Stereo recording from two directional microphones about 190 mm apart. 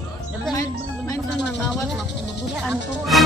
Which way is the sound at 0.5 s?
15° left (ahead or behind).